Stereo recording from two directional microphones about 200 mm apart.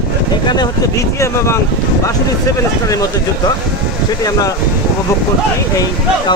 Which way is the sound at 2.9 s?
20° left (ahead or behind).